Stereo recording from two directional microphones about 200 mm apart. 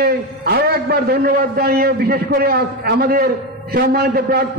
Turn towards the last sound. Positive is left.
turn(degrees=-50)  # may be behind; listen again after turning